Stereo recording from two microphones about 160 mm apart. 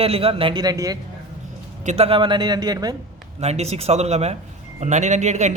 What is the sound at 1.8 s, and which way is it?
A man's voice, 40° right (ahead or behind).